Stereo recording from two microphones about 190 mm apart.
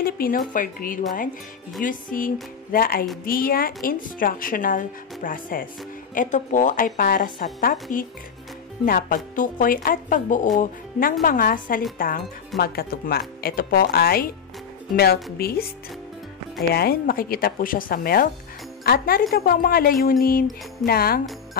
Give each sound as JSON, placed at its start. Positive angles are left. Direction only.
{"t": 0.0, "sound": "a sound", "side_deg": 50}
{"t": 0.5, "sound": "a woman's voice", "side_deg": 45}
{"t": 8.8, "sound": "a woman's voice", "side_deg": 50}
{"t": 15.3, "sound": "speech", "side_deg": 55}
{"t": 16.7, "sound": "a woman's voice", "side_deg": 55}